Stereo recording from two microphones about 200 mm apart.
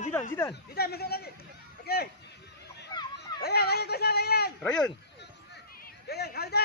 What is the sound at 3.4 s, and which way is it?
Speech, 50° left (ahead or behind).